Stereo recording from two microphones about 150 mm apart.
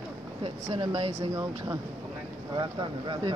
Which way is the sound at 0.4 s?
35° right (ahead or behind).